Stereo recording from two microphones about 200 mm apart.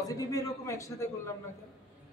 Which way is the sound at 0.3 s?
15° left (ahead or behind).